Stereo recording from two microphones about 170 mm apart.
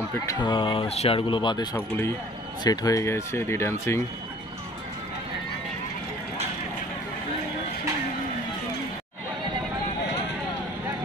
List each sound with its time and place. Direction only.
0.3 s speech: 25° left (ahead or behind)
1.8 s speech: 15° left (ahead or behind)